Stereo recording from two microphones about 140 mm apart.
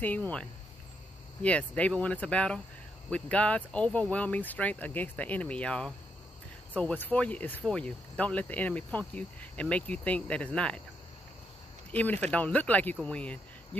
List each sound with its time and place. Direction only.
0.0 s speech: 10° left (ahead or behind)
11.9 s speech: 10° left (ahead or behind)